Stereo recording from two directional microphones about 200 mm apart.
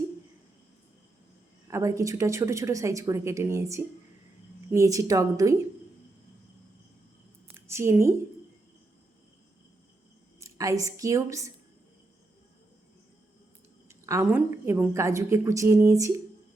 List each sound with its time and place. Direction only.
1.6 s a woman's voice: 15° right (ahead or behind)
7.5 s a sound: 15° right (ahead or behind)
10.4 s a woman's voice: 15° right (ahead or behind)
13.8 s a woman's voice: 15° right (ahead or behind)